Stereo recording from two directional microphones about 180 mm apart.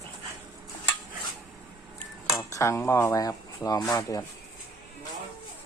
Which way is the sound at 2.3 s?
15° left (ahead or behind).